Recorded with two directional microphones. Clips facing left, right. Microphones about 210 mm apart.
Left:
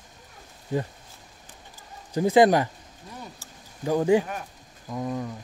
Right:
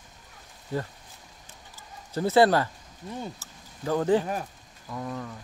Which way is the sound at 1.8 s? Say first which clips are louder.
Left 3 dB; 15° left (ahead or behind).